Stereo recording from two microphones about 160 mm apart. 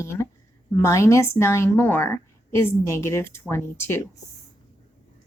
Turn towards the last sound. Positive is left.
turn(degrees=15)  # may be behind; listen again after turning